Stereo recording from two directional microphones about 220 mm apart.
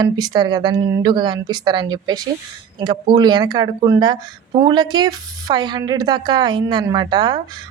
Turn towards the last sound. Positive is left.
turn(degrees=-20)  # may be behind; listen again after turning